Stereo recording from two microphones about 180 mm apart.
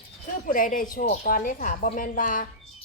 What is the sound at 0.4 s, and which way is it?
Speech, 50° left (ahead or behind).